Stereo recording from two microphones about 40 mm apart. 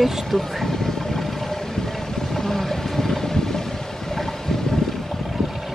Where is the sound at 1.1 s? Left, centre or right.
Centre.